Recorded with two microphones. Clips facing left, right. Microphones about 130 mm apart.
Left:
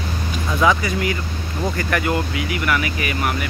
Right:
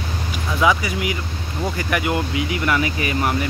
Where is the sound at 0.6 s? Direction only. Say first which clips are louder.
Left 1 dB; 10° right (ahead or behind).